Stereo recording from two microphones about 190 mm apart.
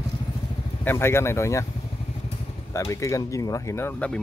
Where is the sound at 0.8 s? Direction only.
10° left (ahead or behind).